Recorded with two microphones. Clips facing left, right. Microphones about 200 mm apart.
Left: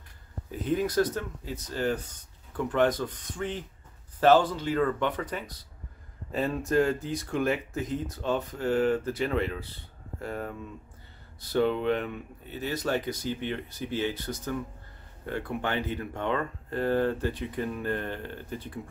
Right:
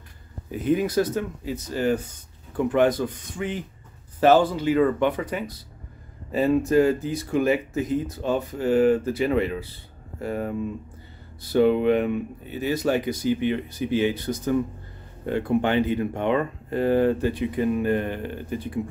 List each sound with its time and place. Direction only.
0.5 s speech: 10° right (ahead or behind)